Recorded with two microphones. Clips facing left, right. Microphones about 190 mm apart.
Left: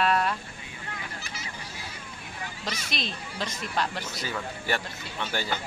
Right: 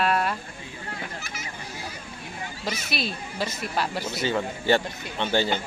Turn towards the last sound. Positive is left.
turn(degrees=-25)  # may be behind; listen again after turning